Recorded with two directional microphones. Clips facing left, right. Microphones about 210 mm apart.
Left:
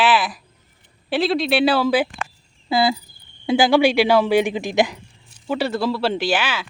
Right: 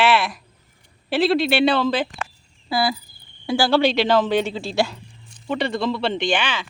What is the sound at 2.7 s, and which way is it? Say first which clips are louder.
Speech: left 3 dB; 25° left (ahead or behind).